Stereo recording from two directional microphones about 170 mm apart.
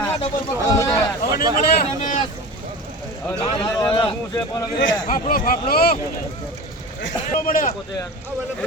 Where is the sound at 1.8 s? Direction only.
50° left (ahead or behind).